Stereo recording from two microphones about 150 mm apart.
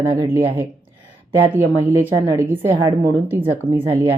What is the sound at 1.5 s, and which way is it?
A woman's voice, 10° right (ahead or behind).